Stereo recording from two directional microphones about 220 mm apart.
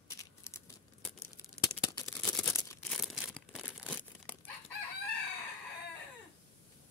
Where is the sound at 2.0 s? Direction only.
5° left (ahead or behind).